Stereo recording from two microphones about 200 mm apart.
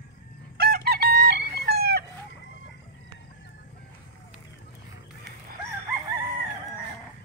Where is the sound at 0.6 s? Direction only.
50° right (ahead or behind).